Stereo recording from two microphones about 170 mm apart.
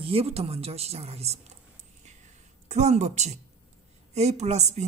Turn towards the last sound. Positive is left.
turn(degrees=-40)  # may be behind; listen again after turning